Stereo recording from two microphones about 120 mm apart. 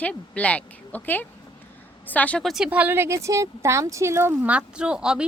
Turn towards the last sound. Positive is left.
turn(degrees=-5)  # may be behind; listen again after turning